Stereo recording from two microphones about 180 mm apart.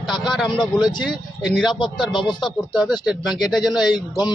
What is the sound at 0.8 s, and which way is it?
Speech, 25° left (ahead or behind).